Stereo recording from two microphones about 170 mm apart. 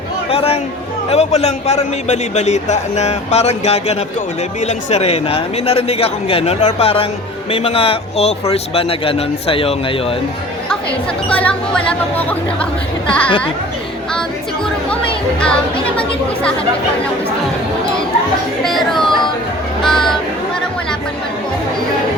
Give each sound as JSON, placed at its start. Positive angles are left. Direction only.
{"t": 0.3, "sound": "a man's voice", "side_deg": 35}
{"t": 11.3, "sound": "speech", "side_deg": 5}
{"t": 16.0, "sound": "speech", "side_deg": 5}
{"t": 18.6, "sound": "speech", "side_deg": 0}